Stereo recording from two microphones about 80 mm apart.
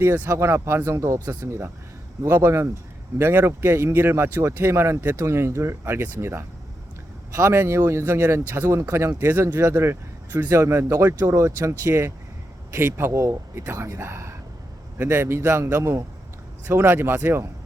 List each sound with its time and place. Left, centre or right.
0.1 s speech: right
9.6 s speech: right
10.6 s speech: right